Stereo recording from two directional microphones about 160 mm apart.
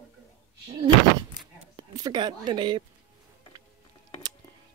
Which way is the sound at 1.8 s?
25° right (ahead or behind).